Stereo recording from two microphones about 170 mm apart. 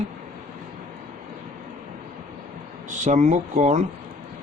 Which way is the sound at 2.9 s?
45° right (ahead or behind).